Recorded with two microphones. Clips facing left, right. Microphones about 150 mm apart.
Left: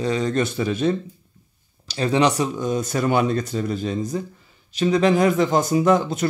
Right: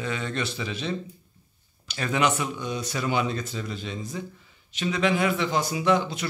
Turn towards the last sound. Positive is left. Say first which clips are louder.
# left 6 dB
turn(degrees=45)  # may be behind; listen again after turning